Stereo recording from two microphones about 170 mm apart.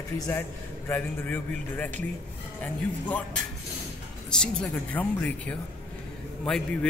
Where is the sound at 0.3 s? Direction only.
10° left (ahead or behind).